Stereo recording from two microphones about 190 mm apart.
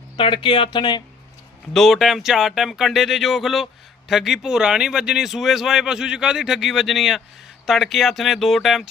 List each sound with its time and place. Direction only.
0.2 s speech: 25° left (ahead or behind)
1.7 s speech: centre (ahead or behind)